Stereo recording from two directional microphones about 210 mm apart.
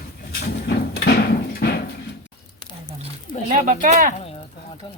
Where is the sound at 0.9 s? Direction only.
50° left (ahead or behind).